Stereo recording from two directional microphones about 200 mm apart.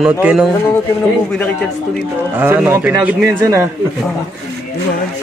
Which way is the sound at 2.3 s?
10° right (ahead or behind).